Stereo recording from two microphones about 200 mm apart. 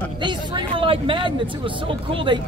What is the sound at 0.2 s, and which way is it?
Speech, 25° right (ahead or behind).